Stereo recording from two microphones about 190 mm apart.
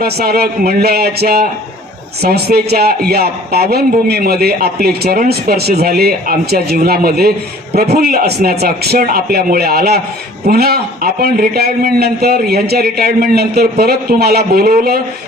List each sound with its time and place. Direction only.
0.0 s a man's voice: 55° right (ahead or behind)